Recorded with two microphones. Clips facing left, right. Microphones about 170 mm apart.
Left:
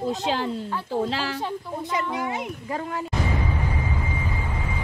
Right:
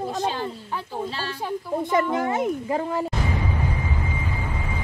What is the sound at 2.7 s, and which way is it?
Speech, 30° right (ahead or behind).